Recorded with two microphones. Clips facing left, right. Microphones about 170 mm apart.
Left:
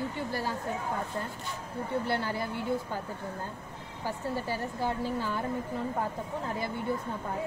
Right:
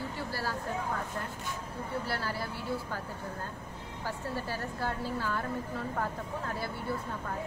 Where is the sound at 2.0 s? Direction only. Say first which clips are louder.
Left 4 dB; 20° left (ahead or behind).